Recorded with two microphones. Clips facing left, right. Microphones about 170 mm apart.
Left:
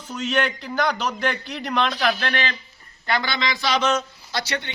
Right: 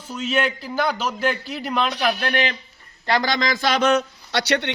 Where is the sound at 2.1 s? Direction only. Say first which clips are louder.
Right 3 dB; 15° right (ahead or behind).